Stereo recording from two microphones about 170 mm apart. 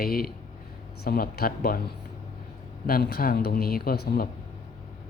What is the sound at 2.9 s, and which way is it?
A man's voice, 65° left (ahead or behind).